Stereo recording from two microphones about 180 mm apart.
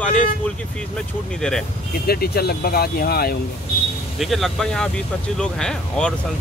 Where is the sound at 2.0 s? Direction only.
60° left (ahead or behind).